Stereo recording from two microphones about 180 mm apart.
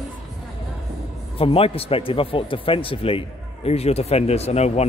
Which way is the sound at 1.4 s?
30° left (ahead or behind).